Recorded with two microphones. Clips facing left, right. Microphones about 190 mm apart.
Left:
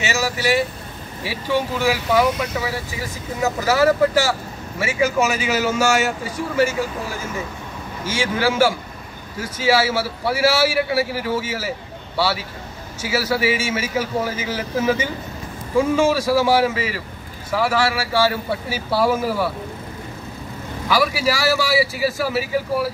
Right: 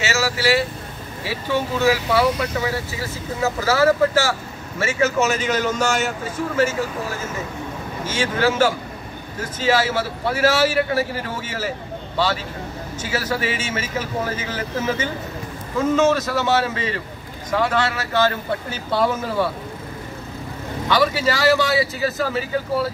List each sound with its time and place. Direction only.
0.0 s vehicle: 15° left (ahead or behind)
1.2 s speech: 15° left (ahead or behind)
8.0 s speech: 10° left (ahead or behind)
20.9 s speech: 10° left (ahead or behind)